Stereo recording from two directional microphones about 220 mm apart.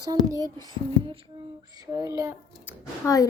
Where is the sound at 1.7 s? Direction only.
15° right (ahead or behind).